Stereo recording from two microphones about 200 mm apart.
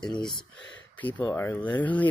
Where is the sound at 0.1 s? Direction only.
20° left (ahead or behind).